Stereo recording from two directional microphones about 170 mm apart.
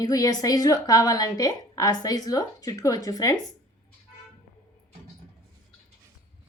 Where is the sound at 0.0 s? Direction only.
20° left (ahead or behind).